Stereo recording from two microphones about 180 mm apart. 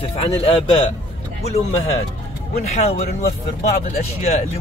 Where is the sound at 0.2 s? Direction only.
30° left (ahead or behind).